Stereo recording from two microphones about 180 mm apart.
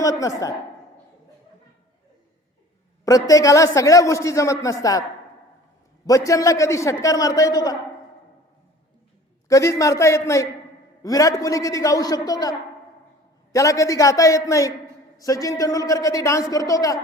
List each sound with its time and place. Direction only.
0.0 s a woman's voice: 20° left (ahead or behind)
3.0 s a man's voice: 20° left (ahead or behind)
6.1 s a man's voice: 20° left (ahead or behind)
9.5 s a man's voice: 20° left (ahead or behind)